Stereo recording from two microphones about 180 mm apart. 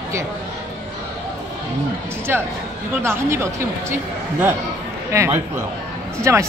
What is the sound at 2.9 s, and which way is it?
Speech, 15° right (ahead or behind).